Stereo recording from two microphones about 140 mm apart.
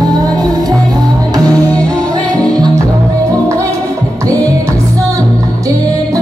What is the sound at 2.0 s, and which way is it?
Music, 5° left (ahead or behind).